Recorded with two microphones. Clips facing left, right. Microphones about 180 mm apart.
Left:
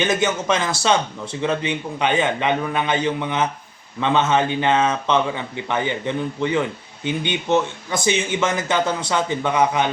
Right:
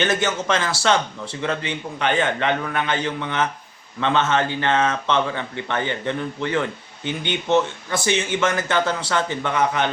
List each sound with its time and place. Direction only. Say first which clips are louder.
0.0 s speech: left 1 dB; 15° left (ahead or behind)